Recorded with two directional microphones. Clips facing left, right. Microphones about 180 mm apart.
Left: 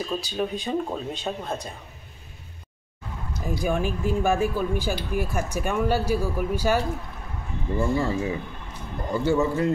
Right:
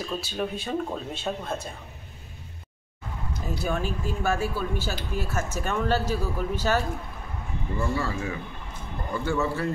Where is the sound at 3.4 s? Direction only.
15° left (ahead or behind).